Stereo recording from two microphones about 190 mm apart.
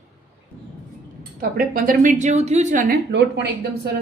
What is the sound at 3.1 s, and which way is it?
Speech, 65° right (ahead or behind).